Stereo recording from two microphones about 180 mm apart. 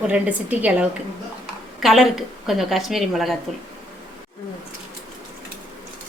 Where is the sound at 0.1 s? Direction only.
5° right (ahead or behind).